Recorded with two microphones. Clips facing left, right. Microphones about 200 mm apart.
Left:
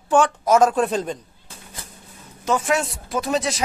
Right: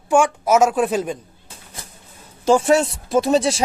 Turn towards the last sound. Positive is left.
turn(degrees=-30)  # may be behind; listen again after turning